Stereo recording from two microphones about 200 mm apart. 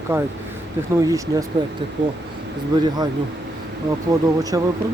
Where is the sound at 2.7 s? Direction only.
20° right (ahead or behind).